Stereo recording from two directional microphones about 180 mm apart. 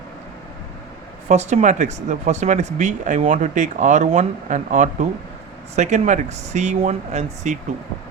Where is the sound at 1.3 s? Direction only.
40° right (ahead or behind).